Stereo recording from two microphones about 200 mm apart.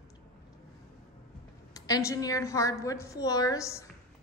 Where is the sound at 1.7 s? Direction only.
15° left (ahead or behind).